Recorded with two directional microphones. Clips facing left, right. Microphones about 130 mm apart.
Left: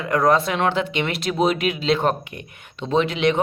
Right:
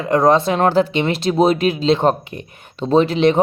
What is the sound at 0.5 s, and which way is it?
Speech, 40° right (ahead or behind).